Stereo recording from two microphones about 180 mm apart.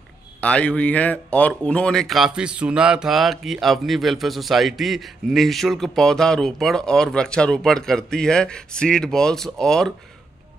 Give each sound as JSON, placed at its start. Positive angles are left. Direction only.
{"t": 0.4, "sound": "speech", "side_deg": 5}